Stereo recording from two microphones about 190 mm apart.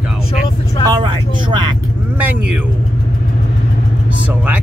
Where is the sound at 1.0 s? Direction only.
25° right (ahead or behind).